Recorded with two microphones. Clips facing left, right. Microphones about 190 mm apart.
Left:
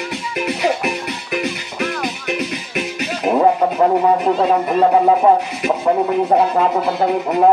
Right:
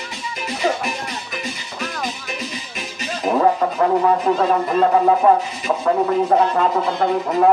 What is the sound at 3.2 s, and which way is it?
Radio, 10° left (ahead or behind).